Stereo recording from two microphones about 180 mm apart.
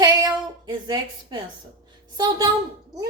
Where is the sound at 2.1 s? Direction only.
20° right (ahead or behind).